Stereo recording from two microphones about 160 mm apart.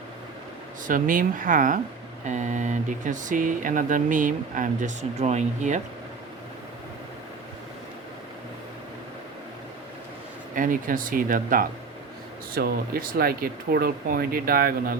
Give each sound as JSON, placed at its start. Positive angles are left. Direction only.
{"t": 0.9, "sound": "speech", "side_deg": -55}
{"t": 10.5, "sound": "speech", "side_deg": -55}